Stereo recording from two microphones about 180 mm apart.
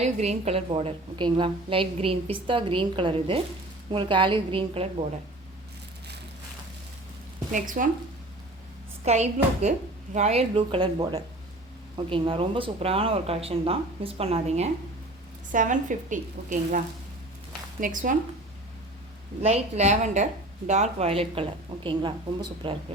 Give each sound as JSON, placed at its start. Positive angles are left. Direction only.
{"t": 0.0, "sound": "a woman's voice", "side_deg": -40}
{"t": 7.5, "sound": "a woman's voice", "side_deg": -45}
{"t": 9.0, "sound": "a woman's voice", "side_deg": -35}
{"t": 19.4, "sound": "a woman's voice", "side_deg": -35}
{"t": 22.6, "sound": "a woman's voice", "side_deg": -30}